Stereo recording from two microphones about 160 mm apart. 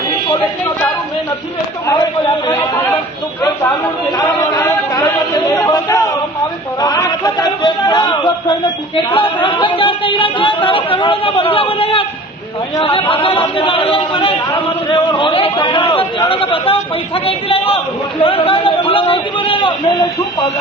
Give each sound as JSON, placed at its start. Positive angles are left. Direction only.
{"t": 1.9, "sound": "a man's voice", "side_deg": 25}
{"t": 4.2, "sound": "a capella", "side_deg": 25}
{"t": 4.6, "sound": "chant", "side_deg": 20}
{"t": 5.6, "sound": "a sound", "side_deg": 20}
{"t": 9.1, "sound": "a man's voice", "side_deg": 30}